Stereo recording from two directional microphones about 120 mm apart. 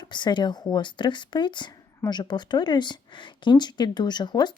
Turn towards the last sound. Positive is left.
turn(degrees=35)  # may be behind; listen again after turning